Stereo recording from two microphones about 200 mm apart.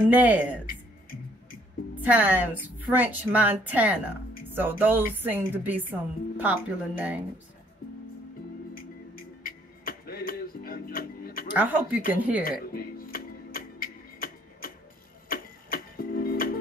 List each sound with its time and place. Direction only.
0.1 s a woman's voice: 10° right (ahead or behind)
2.0 s a woman's voice: 10° right (ahead or behind)
8.7 s music: 45° left (ahead or behind)
11.5 s a woman's voice: 10° right (ahead or behind)
12.4 s music: 45° left (ahead or behind)